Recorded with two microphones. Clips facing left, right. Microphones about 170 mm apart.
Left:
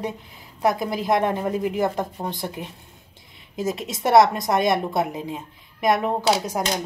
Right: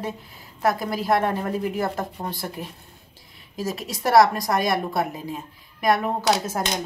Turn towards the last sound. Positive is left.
turn(degrees=15)  # may be behind; listen again after turning